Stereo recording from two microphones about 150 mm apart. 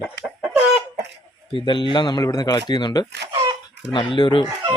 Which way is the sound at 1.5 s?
35° left (ahead or behind).